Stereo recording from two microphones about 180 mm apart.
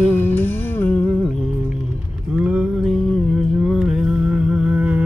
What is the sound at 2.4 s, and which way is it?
Music, 5° right (ahead or behind).